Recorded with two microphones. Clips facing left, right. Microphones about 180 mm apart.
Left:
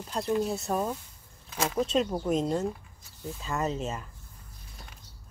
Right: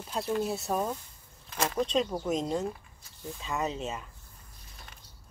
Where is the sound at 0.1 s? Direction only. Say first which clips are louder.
Left 2 dB; centre (ahead or behind).